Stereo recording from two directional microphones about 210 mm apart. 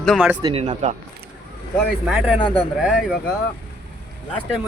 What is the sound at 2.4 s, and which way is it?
Speech, 25° left (ahead or behind).